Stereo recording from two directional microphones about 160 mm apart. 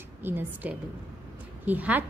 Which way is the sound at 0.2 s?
10° right (ahead or behind).